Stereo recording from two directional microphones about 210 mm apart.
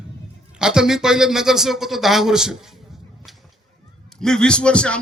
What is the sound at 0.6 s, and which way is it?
Speech, 5° right (ahead or behind).